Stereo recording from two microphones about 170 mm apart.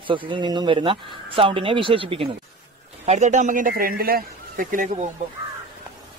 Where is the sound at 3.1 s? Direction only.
45° right (ahead or behind).